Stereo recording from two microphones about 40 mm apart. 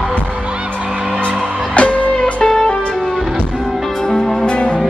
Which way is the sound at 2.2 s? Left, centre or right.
Centre.